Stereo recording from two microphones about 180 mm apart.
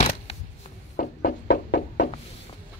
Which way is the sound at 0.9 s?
60° left (ahead or behind).